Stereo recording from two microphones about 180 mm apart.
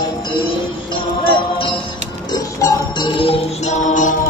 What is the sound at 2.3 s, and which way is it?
Music, 20° left (ahead or behind).